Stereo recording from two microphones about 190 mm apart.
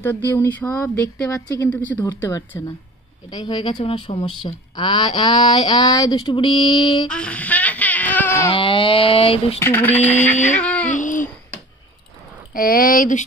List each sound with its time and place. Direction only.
0.3 s mantra: 10° left (ahead or behind)
3.3 s speech: 20° left (ahead or behind)
7.1 s baby cry: 5° left (ahead or behind)
8.5 s speech: 25° left (ahead or behind)
9.6 s mantra: 10° left (ahead or behind)
10.5 s a sound: 5° left (ahead or behind)
10.9 s a sound: 40° left (ahead or behind)
12.5 s speech: 50° left (ahead or behind)